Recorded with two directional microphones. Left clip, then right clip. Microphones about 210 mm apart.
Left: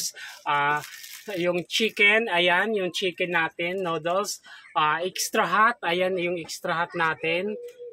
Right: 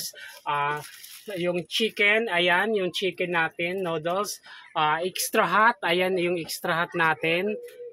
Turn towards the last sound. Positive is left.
turn(degrees=-30)  # may be behind; listen again after turning